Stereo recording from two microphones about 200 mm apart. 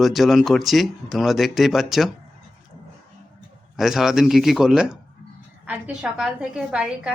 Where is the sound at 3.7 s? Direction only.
Centre (ahead or behind).